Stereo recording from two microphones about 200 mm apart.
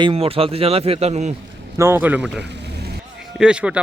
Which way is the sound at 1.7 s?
10° right (ahead or behind).